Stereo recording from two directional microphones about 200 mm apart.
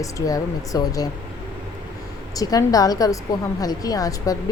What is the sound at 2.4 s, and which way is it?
A woman's voice, 20° left (ahead or behind).